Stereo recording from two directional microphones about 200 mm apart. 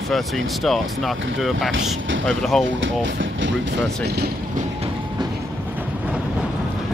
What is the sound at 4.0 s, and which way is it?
Speech, 55° right (ahead or behind).